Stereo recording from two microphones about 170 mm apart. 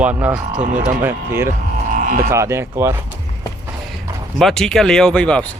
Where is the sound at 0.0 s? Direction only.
10° right (ahead or behind).